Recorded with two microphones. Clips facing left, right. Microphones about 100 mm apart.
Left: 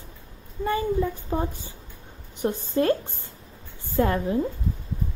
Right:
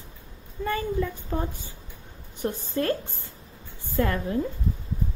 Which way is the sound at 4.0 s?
25° left (ahead or behind).